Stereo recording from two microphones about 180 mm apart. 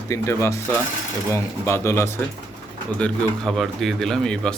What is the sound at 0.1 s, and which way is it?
Speech, 15° left (ahead or behind).